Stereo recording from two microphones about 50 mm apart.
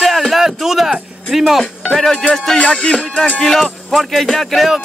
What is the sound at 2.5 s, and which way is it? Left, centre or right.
Speech, left.